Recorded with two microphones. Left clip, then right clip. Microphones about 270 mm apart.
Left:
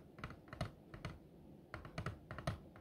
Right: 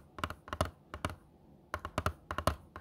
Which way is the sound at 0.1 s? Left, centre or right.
Right.